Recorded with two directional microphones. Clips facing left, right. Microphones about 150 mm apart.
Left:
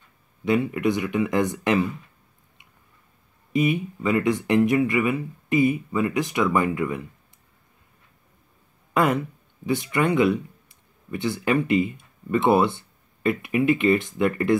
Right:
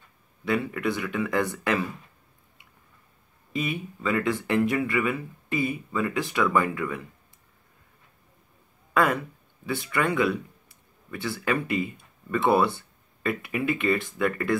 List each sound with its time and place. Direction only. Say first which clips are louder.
0.5 s speech: left 5 dB; 20° left (ahead or behind)
3.5 s speech: left 8 dB; 20° left (ahead or behind)
8.9 s speech: left 2 dB; 20° left (ahead or behind)